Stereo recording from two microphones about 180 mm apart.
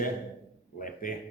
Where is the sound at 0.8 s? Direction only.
50° left (ahead or behind).